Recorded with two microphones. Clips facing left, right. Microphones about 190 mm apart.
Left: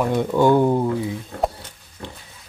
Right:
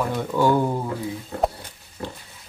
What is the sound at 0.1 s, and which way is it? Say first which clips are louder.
Speech: left 4 dB; 20° left (ahead or behind).